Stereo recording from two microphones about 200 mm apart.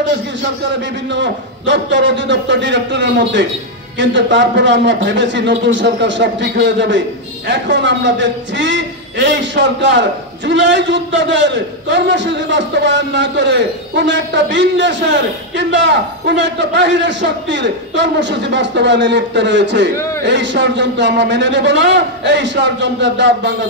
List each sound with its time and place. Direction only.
1.1 s a man's voice: 65° right (ahead or behind)